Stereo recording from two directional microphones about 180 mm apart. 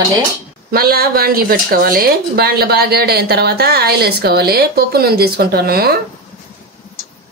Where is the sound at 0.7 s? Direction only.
55° right (ahead or behind).